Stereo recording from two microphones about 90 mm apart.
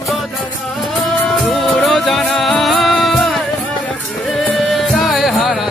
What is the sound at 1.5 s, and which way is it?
Music, centre (ahead or behind).